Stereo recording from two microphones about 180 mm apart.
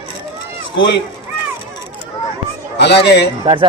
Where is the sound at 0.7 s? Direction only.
75° left (ahead or behind).